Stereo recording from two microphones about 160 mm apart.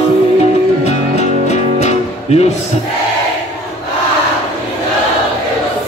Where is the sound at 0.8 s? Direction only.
45° left (ahead or behind).